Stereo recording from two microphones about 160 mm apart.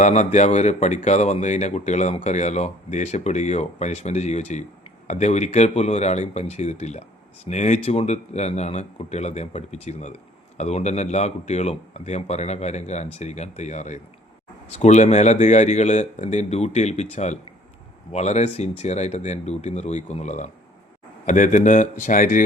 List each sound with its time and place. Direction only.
0.0 s speech: 45° left (ahead or behind)